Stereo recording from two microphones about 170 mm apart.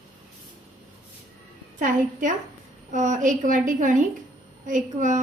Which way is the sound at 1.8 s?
50° right (ahead or behind).